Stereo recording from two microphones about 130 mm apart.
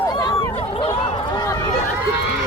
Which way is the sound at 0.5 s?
45° left (ahead or behind).